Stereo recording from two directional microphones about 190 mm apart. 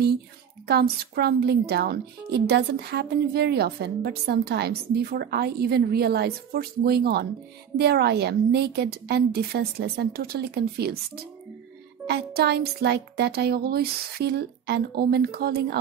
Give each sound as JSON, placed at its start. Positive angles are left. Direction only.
{"t": 0.7, "sound": "speech", "side_deg": -55}
{"t": 12.4, "sound": "speech", "side_deg": -55}